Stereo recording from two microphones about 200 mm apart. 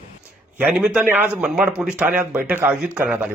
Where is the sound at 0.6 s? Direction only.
5° right (ahead or behind).